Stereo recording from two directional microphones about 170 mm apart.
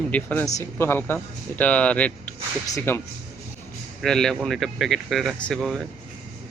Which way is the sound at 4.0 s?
5° left (ahead or behind).